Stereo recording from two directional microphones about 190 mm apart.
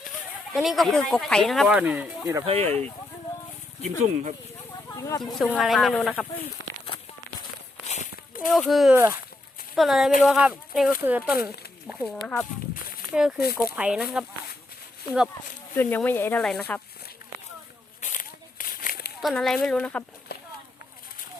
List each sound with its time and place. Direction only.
0.5 s speech: centre (ahead or behind)
2.5 s speech: 35° right (ahead or behind)
3.8 s speech: 40° right (ahead or behind)
4.9 s speech: 15° left (ahead or behind)
5.2 s speech: centre (ahead or behind)
7.9 s a sound: 40° left (ahead or behind)
8.4 s speech: centre (ahead or behind)
13.4 s speech: 55° left (ahead or behind)
13.7 s speech: 5° right (ahead or behind)
15.7 s speech: 10° left (ahead or behind)
18.0 s a sound: 45° left (ahead or behind)
19.2 s speech: centre (ahead or behind)